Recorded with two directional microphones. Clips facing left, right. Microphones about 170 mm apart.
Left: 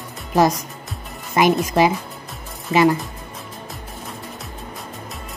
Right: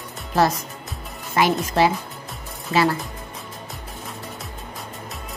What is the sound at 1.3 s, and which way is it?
Speech, 15° left (ahead or behind).